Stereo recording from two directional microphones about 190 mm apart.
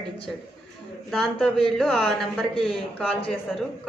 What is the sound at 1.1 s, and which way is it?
A woman's voice, centre (ahead or behind).